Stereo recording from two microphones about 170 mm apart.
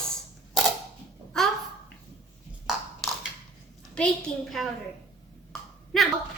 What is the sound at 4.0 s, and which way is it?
Speech, 5° left (ahead or behind).